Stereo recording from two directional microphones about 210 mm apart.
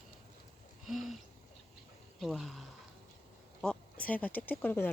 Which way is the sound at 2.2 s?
Centre (ahead or behind).